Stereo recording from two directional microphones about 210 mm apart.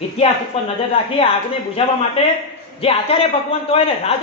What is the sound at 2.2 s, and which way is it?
A man's voice, 25° left (ahead or behind).